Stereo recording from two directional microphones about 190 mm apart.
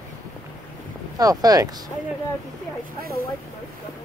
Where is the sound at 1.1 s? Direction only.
20° right (ahead or behind).